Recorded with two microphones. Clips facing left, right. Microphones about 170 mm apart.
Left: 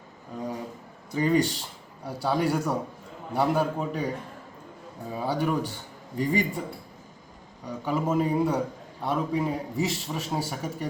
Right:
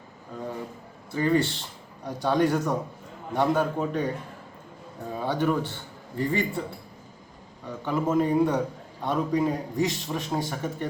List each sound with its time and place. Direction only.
1.1 s a man's voice: 15° left (ahead or behind)
5.1 s a man's voice: 10° left (ahead or behind)
7.9 s a man's voice: 10° left (ahead or behind)